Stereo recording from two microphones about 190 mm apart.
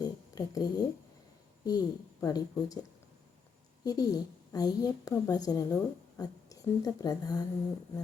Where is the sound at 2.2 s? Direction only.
20° left (ahead or behind).